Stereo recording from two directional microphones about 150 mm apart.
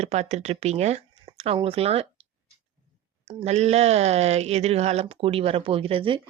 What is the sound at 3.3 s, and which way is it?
Speech, 40° right (ahead or behind).